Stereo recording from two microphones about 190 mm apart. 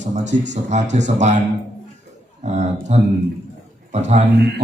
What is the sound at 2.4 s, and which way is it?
A man's voice, 35° right (ahead or behind).